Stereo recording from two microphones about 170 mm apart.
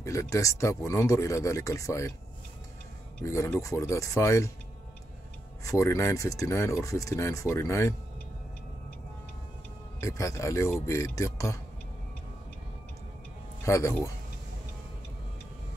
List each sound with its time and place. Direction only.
0.0 s speech: 20° left (ahead or behind)
3.2 s speech: 15° left (ahead or behind)
5.6 s speech: 15° left (ahead or behind)
9.9 s speech: 15° left (ahead or behind)
13.7 s speech: 15° left (ahead or behind)